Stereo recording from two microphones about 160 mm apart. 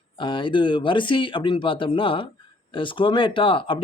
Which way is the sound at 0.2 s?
30° left (ahead or behind).